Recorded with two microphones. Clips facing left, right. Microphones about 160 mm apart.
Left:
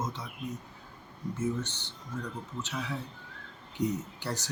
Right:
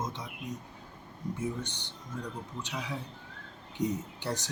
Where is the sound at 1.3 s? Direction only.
15° right (ahead or behind).